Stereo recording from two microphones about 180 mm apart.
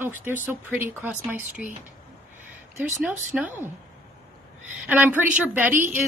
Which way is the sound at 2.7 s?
10° right (ahead or behind).